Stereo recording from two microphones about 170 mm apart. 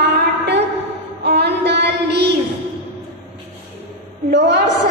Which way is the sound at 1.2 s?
75° right (ahead or behind).